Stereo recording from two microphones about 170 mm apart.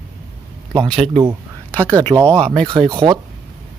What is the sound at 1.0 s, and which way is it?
Speech, 30° right (ahead or behind).